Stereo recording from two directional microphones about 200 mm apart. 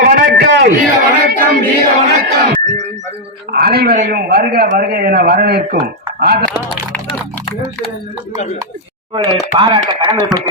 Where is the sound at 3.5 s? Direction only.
50° right (ahead or behind).